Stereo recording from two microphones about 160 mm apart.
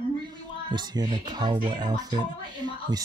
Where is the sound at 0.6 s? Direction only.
30° right (ahead or behind).